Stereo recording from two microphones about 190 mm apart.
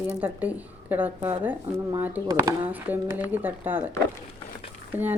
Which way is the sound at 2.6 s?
10° right (ahead or behind).